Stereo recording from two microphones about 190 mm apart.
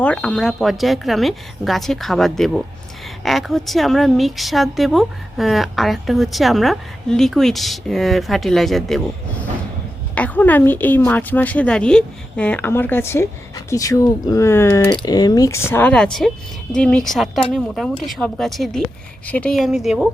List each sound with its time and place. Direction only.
0.0 s a woman's voice: 5° left (ahead or behind)
10.2 s a woman's voice: 10° left (ahead or behind)